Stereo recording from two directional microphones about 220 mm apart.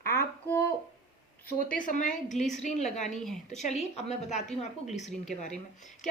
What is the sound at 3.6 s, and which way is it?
A woman's voice, 30° left (ahead or behind).